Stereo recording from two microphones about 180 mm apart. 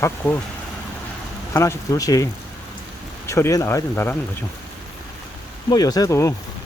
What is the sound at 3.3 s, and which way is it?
Speech, 15° left (ahead or behind).